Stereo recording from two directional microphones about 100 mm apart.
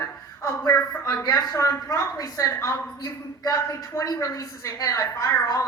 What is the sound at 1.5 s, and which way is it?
A woman's voice, 30° left (ahead or behind).